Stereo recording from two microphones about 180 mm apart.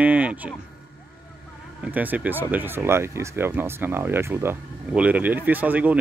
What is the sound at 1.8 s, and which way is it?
Speech, 10° right (ahead or behind).